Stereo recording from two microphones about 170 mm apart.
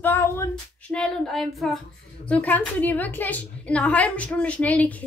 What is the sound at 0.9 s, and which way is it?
A woman's voice, 5° left (ahead or behind).